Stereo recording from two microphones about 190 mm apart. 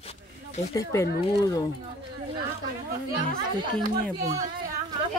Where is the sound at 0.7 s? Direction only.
15° left (ahead or behind).